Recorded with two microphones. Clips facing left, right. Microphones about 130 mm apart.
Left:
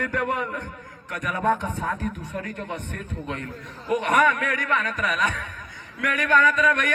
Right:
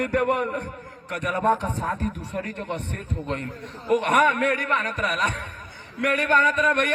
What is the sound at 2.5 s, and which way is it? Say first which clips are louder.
Speech: right 2 dB; 75° right (ahead or behind).